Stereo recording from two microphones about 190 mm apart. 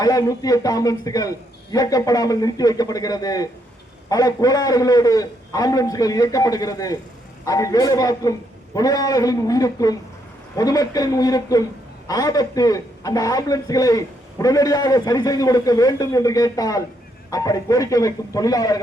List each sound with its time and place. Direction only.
0.0 s a man's voice: 20° left (ahead or behind)